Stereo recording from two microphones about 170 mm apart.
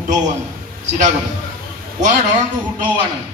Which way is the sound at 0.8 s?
45° right (ahead or behind).